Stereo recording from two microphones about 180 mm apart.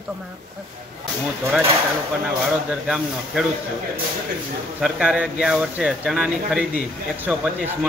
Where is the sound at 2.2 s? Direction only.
5° right (ahead or behind).